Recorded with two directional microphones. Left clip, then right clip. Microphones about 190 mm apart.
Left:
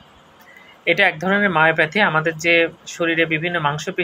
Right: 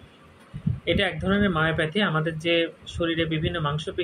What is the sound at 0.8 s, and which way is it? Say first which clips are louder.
Speech: left 8 dB; 15° right (ahead or behind).